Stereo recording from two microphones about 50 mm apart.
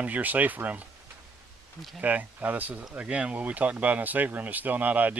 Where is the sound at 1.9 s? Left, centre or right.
Right.